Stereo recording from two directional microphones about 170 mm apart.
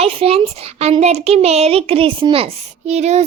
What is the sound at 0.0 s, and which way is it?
A child's voice, 35° right (ahead or behind).